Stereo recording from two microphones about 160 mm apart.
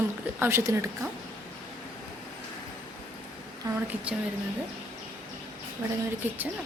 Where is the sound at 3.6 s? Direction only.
20° right (ahead or behind).